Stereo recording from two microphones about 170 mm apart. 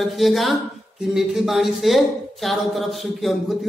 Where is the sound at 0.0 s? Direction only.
Centre (ahead or behind).